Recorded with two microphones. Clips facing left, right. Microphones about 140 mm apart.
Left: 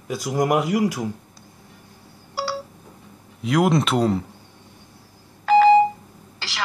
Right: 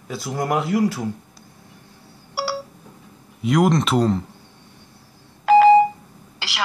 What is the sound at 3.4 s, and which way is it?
Speech, centre (ahead or behind).